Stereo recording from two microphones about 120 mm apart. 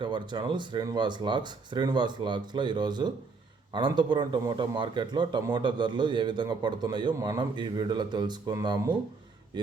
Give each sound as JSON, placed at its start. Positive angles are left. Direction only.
{"t": 0.0, "sound": "speech", "side_deg": -40}